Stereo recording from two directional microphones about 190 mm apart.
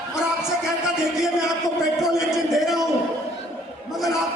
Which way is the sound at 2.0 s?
Centre (ahead or behind).